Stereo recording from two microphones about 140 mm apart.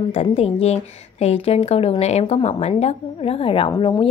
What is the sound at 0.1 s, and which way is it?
A woman's voice, 45° left (ahead or behind).